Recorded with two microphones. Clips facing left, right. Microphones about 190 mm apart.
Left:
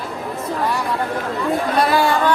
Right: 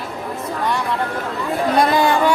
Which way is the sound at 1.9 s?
15° right (ahead or behind).